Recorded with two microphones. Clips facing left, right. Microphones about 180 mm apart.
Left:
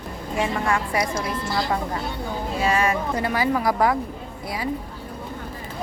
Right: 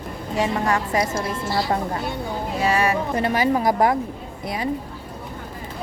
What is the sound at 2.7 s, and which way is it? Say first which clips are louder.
Speech: right 1 dB; 35° right (ahead or behind).